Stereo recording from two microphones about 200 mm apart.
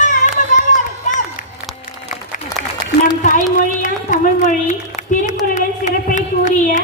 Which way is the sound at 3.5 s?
40° left (ahead or behind).